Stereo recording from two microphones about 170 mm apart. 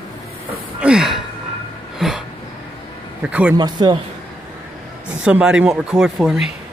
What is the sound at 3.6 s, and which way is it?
Speech, 25° right (ahead or behind).